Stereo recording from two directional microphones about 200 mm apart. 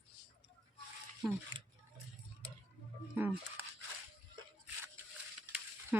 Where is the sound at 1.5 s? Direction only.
20° right (ahead or behind).